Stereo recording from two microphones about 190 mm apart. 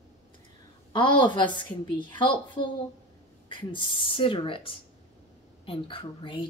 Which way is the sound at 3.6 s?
25° left (ahead or behind).